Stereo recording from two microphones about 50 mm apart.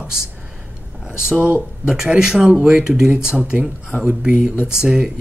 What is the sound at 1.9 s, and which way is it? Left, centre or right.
Speech, centre.